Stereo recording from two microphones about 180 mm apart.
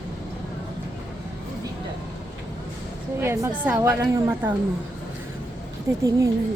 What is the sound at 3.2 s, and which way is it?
A woman's voice, 15° right (ahead or behind).